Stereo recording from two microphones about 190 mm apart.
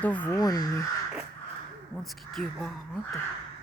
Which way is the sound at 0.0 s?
10° left (ahead or behind).